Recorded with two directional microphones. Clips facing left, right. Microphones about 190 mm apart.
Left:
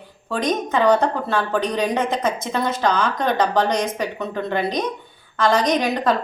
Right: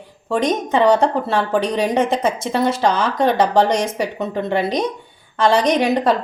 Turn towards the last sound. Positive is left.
turn(degrees=-30)  # may be behind; listen again after turning